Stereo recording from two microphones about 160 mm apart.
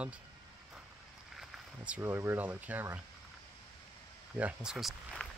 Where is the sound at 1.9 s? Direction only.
15° right (ahead or behind).